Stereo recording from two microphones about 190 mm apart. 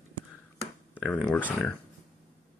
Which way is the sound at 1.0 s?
5° left (ahead or behind).